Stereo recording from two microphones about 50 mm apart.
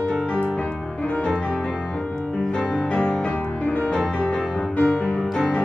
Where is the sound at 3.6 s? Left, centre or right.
Left.